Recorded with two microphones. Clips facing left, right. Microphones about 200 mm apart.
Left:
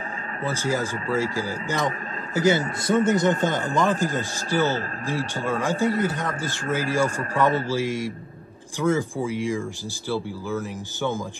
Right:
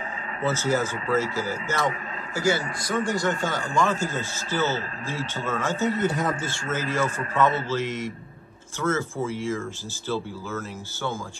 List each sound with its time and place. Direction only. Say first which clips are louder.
0.5 s a man's voice: right 1 dB; 15° left (ahead or behind)